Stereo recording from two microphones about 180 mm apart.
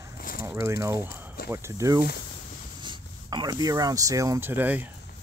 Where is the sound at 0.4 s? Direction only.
15° right (ahead or behind).